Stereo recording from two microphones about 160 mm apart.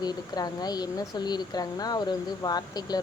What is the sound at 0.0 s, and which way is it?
Speech, 25° left (ahead or behind).